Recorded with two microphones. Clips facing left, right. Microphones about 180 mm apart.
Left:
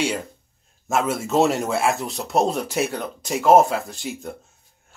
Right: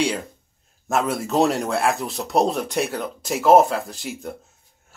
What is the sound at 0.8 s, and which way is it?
Speech, centre (ahead or behind).